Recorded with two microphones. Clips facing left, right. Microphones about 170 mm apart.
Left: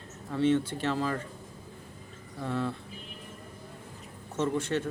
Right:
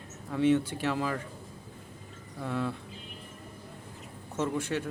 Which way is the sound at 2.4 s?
10° right (ahead or behind).